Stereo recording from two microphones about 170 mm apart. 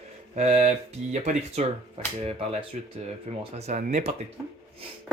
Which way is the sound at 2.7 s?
45° right (ahead or behind).